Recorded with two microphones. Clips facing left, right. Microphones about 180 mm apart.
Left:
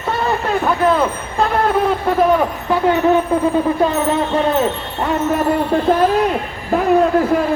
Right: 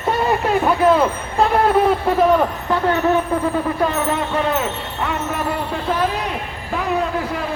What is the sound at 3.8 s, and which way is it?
Speech, 20° left (ahead or behind).